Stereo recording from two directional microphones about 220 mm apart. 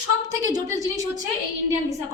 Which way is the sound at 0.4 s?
15° right (ahead or behind).